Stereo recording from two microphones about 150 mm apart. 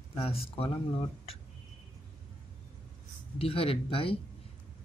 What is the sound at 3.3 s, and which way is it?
Speech, 40° left (ahead or behind).